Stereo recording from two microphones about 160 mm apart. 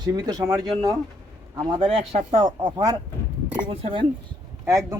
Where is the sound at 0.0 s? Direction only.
25° right (ahead or behind).